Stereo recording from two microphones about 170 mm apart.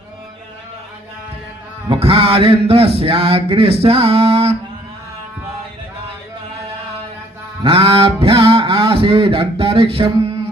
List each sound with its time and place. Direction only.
1.9 s speech: 35° right (ahead or behind)
7.6 s speech: 30° right (ahead or behind)